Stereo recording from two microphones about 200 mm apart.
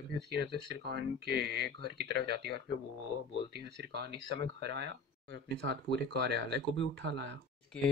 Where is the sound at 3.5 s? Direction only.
55° right (ahead or behind).